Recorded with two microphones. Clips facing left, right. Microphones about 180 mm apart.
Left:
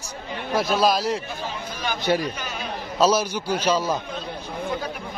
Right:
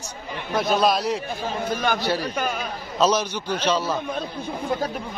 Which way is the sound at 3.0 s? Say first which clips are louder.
Left 1 dB; 10° left (ahead or behind).